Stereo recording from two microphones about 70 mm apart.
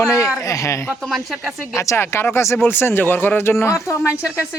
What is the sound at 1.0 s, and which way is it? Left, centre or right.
Speech, centre.